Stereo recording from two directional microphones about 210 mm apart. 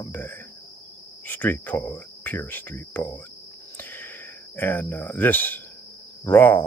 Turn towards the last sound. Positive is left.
turn(degrees=10)  # may be behind; listen again after turning